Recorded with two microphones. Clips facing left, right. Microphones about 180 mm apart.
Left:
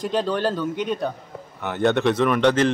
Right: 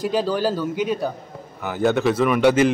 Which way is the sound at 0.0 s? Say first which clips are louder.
Right 2 dB; 5° right (ahead or behind).